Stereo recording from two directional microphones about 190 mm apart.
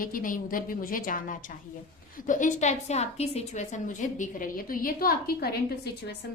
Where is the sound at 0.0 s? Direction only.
45° left (ahead or behind).